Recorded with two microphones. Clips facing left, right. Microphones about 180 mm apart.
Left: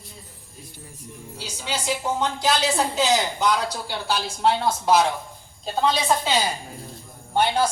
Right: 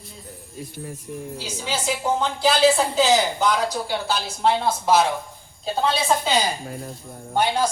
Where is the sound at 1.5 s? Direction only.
Centre (ahead or behind).